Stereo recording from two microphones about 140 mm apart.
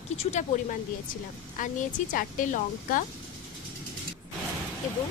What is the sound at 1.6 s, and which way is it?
A woman's voice, 70° left (ahead or behind).